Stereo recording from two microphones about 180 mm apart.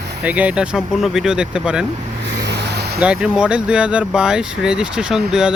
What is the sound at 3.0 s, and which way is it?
Speech, 5° right (ahead or behind).